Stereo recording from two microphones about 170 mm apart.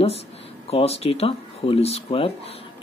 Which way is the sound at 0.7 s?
35° left (ahead or behind).